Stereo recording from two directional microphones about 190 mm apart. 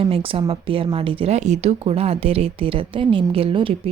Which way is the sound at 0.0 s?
30° right (ahead or behind).